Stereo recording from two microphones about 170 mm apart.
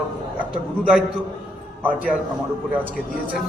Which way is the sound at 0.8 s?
5° right (ahead or behind).